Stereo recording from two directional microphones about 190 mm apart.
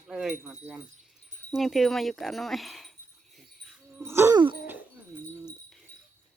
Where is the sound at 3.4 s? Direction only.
5° right (ahead or behind); by 4.5 s 20° right (ahead or behind).